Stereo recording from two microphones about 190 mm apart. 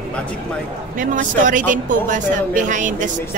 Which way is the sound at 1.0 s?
45° right (ahead or behind).